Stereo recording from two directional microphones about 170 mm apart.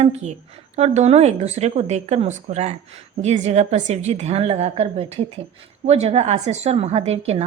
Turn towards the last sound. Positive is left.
turn(degrees=-40)  # may be behind; listen again after turning